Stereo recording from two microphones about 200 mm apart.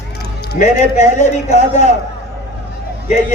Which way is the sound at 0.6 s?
35° left (ahead or behind).